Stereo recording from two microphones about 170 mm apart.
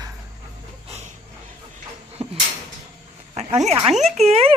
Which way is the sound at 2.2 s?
40° right (ahead or behind).